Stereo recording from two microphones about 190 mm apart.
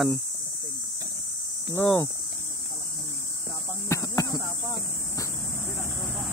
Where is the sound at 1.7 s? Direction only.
15° left (ahead or behind).